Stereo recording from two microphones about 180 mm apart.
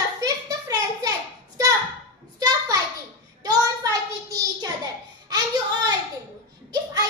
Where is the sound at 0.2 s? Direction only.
20° right (ahead or behind).